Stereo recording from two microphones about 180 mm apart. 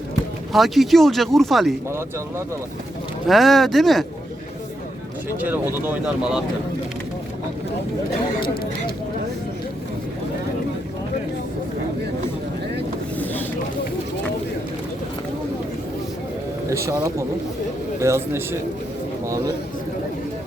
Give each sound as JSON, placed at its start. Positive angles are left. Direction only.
{"t": 0.5, "sound": "speech", "side_deg": 0}
{"t": 1.9, "sound": "speech", "side_deg": -15}
{"t": 3.2, "sound": "speech", "side_deg": 0}
{"t": 5.4, "sound": "speech", "side_deg": -10}
{"t": 13.1, "sound": "vehicle", "side_deg": 10}
{"t": 16.6, "sound": "speech", "side_deg": -15}